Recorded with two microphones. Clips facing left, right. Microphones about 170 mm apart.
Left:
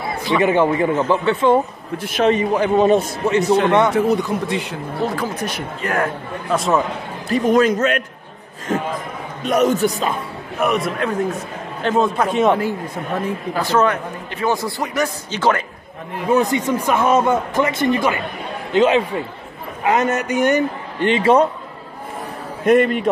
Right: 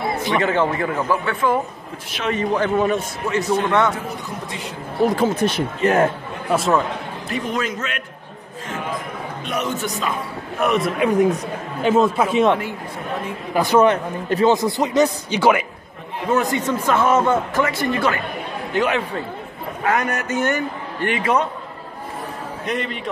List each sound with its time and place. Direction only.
0.4 s a man's voice: 15° left (ahead or behind)
3.9 s a man's voice: 75° left (ahead or behind)
5.0 s speech: 25° right (ahead or behind)
6.5 s a man's voice: centre (ahead or behind)
7.2 s speech: 40° left (ahead or behind)
9.4 s speech: 40° left (ahead or behind)
10.6 s a man's voice: centre (ahead or behind)
11.0 s a man's voice: 15° right (ahead or behind)
11.9 s a man's voice: 5° right (ahead or behind)
13.6 s speech: 15° right (ahead or behind)
16.3 s a man's voice: 20° left (ahead or behind)
22.7 s speech: 50° left (ahead or behind)